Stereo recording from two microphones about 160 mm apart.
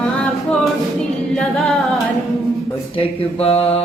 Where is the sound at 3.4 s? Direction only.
40° left (ahead or behind).